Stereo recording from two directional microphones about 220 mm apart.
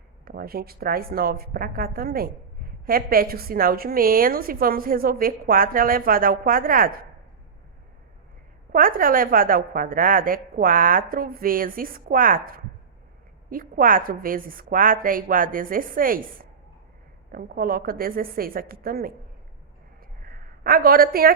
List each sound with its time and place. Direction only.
0.3 s a woman's voice: 45° right (ahead or behind)
8.7 s a woman's voice: 40° right (ahead or behind)
20.2 s a sound: 40° right (ahead or behind)